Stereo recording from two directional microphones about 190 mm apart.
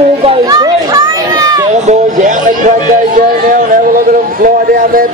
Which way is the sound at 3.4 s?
45° right (ahead or behind).